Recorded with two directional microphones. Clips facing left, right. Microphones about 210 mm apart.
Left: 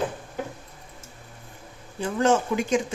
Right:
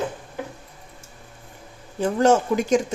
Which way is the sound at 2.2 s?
40° right (ahead or behind).